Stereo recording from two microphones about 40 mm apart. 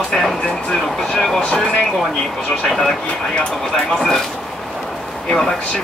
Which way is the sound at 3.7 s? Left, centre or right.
Centre.